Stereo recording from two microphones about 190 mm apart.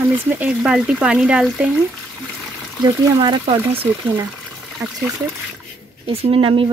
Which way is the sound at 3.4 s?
30° right (ahead or behind).